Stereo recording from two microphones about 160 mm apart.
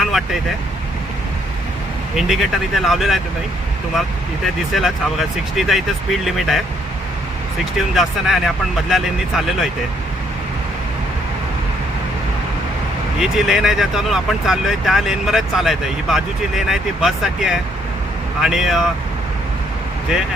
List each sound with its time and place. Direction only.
0.0 s vehicle: centre (ahead or behind)
2.1 s speech: centre (ahead or behind)
4.4 s speech: centre (ahead or behind)
7.6 s speech: centre (ahead or behind)
13.1 s speech: 5° right (ahead or behind)